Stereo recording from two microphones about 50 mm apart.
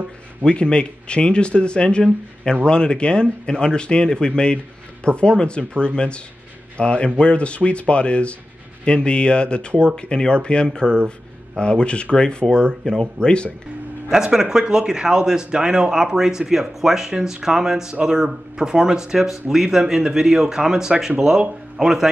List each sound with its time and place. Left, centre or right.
0.5 s speech: centre
14.1 s speech: centre